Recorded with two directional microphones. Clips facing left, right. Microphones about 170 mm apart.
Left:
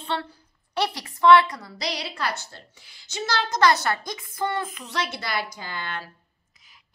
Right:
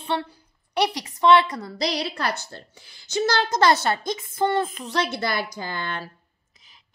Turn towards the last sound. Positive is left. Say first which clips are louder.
# right 4 dB
turn(degrees=-35)  # may be behind; listen again after turning